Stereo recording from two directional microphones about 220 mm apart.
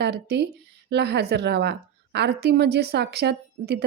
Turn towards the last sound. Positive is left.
turn(degrees=-50)  # may be behind; listen again after turning